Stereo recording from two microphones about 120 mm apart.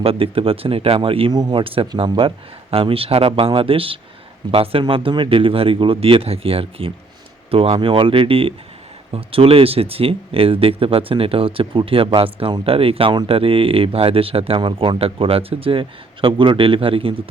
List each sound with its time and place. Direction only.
0.0 s speech: 50° right (ahead or behind)
1.3 s speech: 35° right (ahead or behind)
1.6 s speech: 50° right (ahead or behind)